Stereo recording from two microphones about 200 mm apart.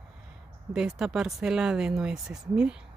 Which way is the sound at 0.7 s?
5° right (ahead or behind).